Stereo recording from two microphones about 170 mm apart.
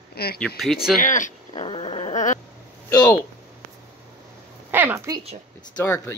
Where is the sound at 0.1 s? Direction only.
65° left (ahead or behind).